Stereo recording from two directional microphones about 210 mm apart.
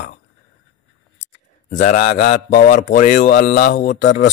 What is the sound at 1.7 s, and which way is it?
Speech, 40° left (ahead or behind).